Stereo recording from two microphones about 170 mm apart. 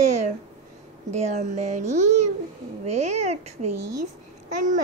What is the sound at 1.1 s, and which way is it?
A child's voice, 40° right (ahead or behind).